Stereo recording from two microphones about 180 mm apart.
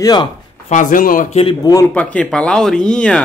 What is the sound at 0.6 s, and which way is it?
Speech, 45° left (ahead or behind).